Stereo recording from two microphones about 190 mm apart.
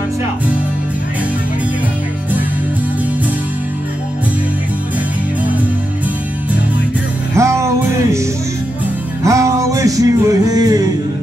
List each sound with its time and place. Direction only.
7.3 s music: 15° right (ahead or behind)